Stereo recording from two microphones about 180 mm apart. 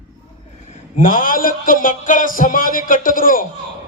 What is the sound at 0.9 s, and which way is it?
A man's voice, 50° left (ahead or behind).